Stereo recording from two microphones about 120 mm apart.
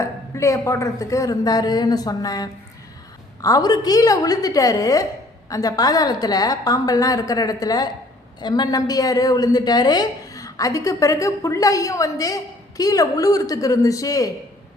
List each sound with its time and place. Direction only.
0.3 s a woman's voice: 25° left (ahead or behind)